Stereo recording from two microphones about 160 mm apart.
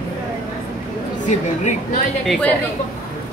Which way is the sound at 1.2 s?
45° left (ahead or behind).